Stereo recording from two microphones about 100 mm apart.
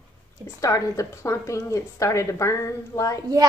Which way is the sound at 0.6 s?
30° left (ahead or behind).